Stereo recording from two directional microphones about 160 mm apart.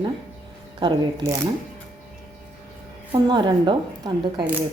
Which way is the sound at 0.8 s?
30° right (ahead or behind).